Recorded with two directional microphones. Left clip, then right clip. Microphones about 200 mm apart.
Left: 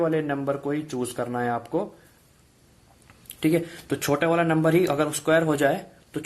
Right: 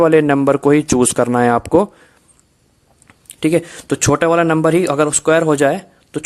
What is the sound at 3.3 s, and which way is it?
Speech, 35° right (ahead or behind).